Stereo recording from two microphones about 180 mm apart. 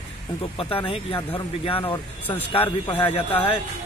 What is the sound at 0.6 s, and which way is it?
A man's voice, 30° left (ahead or behind).